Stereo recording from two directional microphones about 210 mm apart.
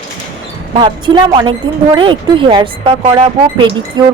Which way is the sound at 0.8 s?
20° right (ahead or behind).